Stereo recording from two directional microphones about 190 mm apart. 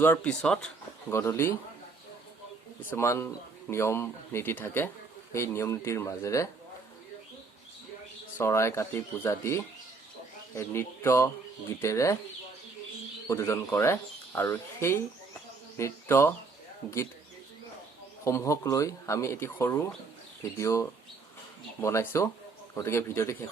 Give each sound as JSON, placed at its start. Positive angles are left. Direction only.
{"t": 0.0, "sound": "speech", "side_deg": 5}
{"t": 1.1, "sound": "speech", "side_deg": 15}
{"t": 2.9, "sound": "speech", "side_deg": 15}
{"t": 8.4, "sound": "speech", "side_deg": 15}
{"t": 13.2, "sound": "speech", "side_deg": 15}
{"t": 18.3, "sound": "speech", "side_deg": 15}